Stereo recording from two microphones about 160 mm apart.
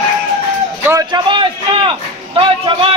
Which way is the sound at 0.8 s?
25° right (ahead or behind).